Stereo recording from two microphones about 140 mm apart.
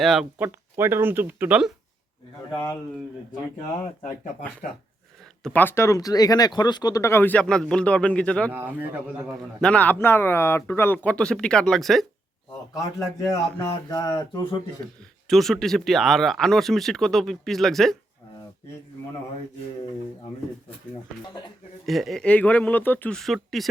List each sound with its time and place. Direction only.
0.0 s speech: centre (ahead or behind)
0.3 s speech: 15° right (ahead or behind)
4.6 s speech: 80° left
5.5 s speech: 15° left (ahead or behind)
8.5 s speech: 15° right (ahead or behind)
9.6 s speech: 10° left (ahead or behind)
13.3 s a sound: 25° left (ahead or behind)
15.3 s speech: centre (ahead or behind)
21.8 s speech: centre (ahead or behind)